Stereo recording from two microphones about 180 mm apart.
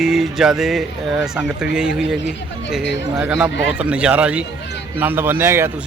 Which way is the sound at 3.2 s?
5° right (ahead or behind).